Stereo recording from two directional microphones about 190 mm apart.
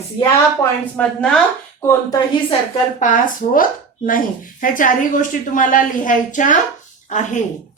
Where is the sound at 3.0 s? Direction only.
45° left (ahead or behind).